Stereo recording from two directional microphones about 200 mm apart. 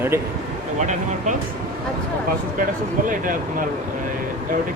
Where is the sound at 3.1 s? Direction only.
40° right (ahead or behind).